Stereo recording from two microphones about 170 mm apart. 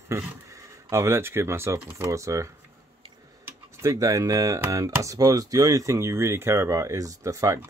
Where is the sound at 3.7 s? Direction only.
20° right (ahead or behind).